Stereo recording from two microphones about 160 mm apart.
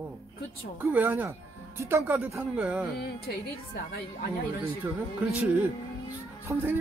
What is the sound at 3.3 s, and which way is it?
Speech, 75° left (ahead or behind).